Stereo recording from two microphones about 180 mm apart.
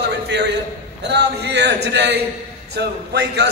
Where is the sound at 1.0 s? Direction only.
70° right (ahead or behind).